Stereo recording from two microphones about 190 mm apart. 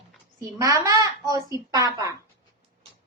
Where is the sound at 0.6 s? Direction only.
20° right (ahead or behind).